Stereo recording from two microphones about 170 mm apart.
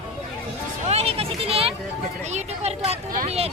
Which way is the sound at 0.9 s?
35° right (ahead or behind).